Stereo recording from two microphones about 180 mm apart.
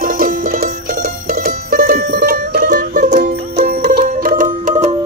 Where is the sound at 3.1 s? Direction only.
60° right (ahead or behind).